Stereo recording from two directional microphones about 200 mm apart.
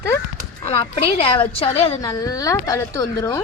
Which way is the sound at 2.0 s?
15° left (ahead or behind).